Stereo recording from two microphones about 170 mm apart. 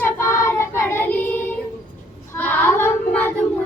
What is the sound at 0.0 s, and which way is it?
Child singing, 15° left (ahead or behind).